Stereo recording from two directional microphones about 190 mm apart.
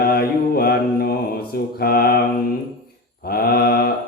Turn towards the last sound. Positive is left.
turn(degrees=55)  # may be behind; listen again after turning